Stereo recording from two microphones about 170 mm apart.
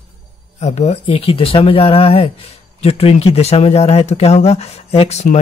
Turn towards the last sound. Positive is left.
turn(degrees=40)  # may be behind; listen again after turning